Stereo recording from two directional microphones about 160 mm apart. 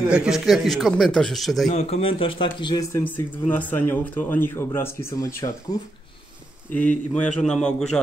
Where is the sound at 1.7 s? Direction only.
40° left (ahead or behind).